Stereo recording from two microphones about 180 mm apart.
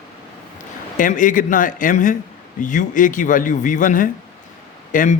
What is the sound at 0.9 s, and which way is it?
A man's voice, 45° left (ahead or behind).